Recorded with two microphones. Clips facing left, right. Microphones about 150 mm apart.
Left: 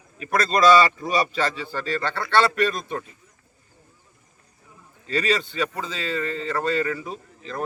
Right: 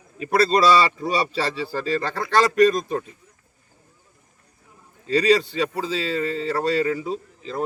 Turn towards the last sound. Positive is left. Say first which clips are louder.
# right 4 dB
turn(degrees=-25)  # may be behind; listen again after turning